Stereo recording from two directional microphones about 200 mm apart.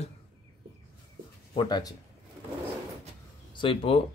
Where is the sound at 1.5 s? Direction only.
20° left (ahead or behind).